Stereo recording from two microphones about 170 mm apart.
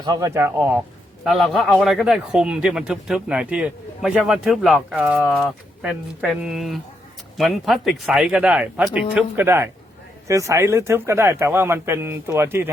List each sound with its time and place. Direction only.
0.0 s speech: 20° right (ahead or behind)
1.2 s a man's voice: centre (ahead or behind)